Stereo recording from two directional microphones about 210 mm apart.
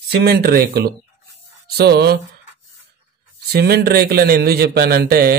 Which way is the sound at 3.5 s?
50° right (ahead or behind).